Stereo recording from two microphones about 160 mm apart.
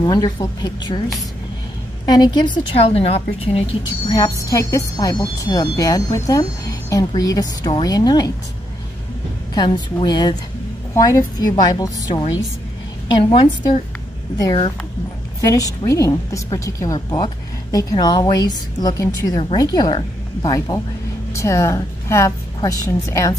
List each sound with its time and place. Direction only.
0.0 s a woman's voice: 25° left (ahead or behind)
2.0 s a woman's voice: 25° left (ahead or behind)
4.1 s a woman's voice: 25° left (ahead or behind)
9.5 s a woman's voice: 30° left (ahead or behind)
15.4 s a woman's voice: 20° left (ahead or behind)